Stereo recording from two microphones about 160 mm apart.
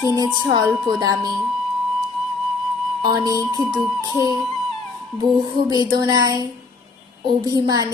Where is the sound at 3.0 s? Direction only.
25° right (ahead or behind).